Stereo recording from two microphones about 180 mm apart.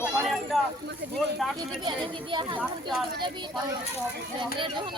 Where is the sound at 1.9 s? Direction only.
25° right (ahead or behind).